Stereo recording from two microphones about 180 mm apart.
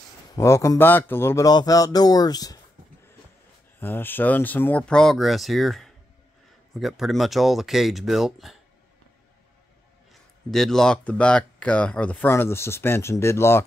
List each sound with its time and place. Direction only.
0.4 s speech: 15° left (ahead or behind)
3.8 s speech: 10° left (ahead or behind)
10.5 s speech: centre (ahead or behind)